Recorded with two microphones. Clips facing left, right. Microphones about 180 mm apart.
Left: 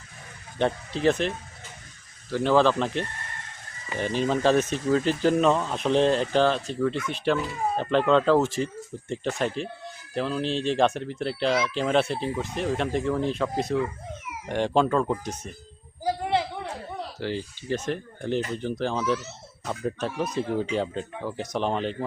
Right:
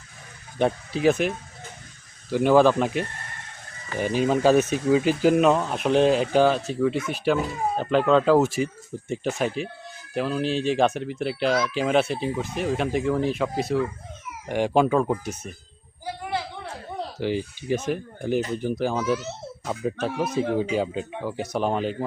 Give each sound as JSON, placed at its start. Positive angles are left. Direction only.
{"t": 0.6, "sound": "speech", "side_deg": -10}
{"t": 2.3, "sound": "speech", "side_deg": -10}
{"t": 16.0, "sound": "a sound", "side_deg": 30}
{"t": 17.2, "sound": "speech", "side_deg": -15}